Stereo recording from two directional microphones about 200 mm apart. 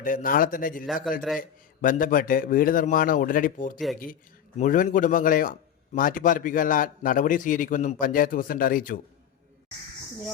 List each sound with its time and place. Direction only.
0.0 s a man's voice: 45° left (ahead or behind)